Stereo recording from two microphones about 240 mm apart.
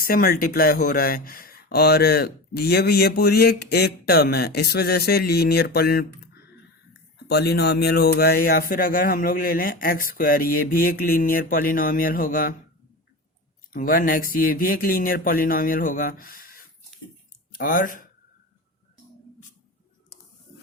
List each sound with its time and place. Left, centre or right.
0.0 s speech: left
13.7 s speech: left